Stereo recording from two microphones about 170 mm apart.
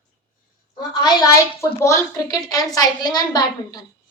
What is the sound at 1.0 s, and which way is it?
A woman's voice, 20° left (ahead or behind).